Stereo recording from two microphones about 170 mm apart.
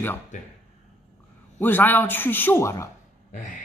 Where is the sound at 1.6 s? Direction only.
10° left (ahead or behind).